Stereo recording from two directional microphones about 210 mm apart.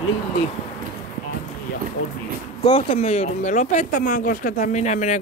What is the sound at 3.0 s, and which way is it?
Speech, 30° left (ahead or behind).